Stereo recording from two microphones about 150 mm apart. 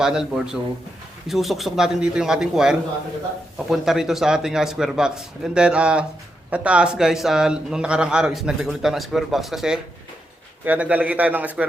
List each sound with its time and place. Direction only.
0.0 s a man's voice: 5° right (ahead or behind)